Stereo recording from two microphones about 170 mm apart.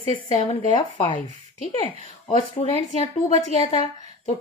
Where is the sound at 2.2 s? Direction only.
40° left (ahead or behind).